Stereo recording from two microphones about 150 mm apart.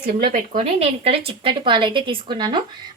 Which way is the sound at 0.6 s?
45° right (ahead or behind).